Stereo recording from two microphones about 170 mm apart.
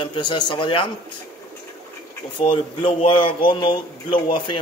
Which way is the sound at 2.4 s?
30° left (ahead or behind).